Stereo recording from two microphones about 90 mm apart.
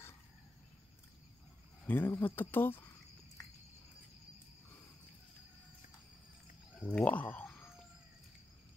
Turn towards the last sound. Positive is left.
turn(degrees=15)  # may be behind; listen again after turning